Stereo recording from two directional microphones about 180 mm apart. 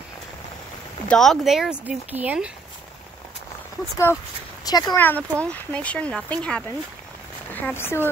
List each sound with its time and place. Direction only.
1.0 s speech: 5° left (ahead or behind)
3.9 s speech: 15° left (ahead or behind)
4.9 s speech: 10° left (ahead or behind)
7.5 s speech: 10° left (ahead or behind)